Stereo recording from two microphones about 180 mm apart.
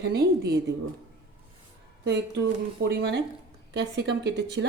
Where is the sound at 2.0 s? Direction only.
70° right (ahead or behind).